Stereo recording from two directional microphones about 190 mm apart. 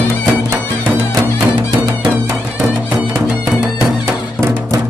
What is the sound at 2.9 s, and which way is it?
Music, 5° right (ahead or behind).